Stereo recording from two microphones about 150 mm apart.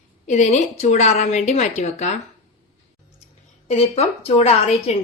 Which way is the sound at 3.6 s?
45° left (ahead or behind).